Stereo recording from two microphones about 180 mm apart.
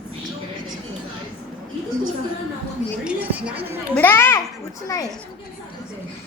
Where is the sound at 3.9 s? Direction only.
10° left (ahead or behind).